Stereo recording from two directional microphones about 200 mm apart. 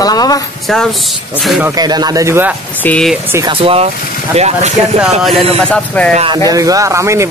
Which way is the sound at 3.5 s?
30° right (ahead or behind).